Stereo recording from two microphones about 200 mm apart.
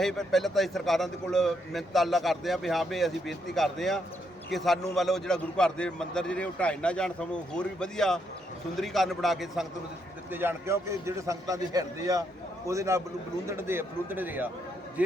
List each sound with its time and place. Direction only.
0.0 s a man's voice: centre (ahead or behind)
10.3 s a man's voice: 10° right (ahead or behind)